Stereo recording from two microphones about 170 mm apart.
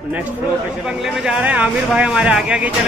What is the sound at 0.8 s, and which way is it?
Speech, 5° right (ahead or behind).